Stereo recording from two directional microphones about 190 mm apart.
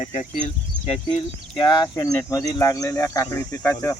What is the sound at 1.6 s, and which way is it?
Speech, 20° left (ahead or behind).